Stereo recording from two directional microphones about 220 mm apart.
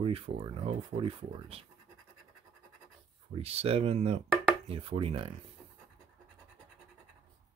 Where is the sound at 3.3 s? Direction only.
25° right (ahead or behind).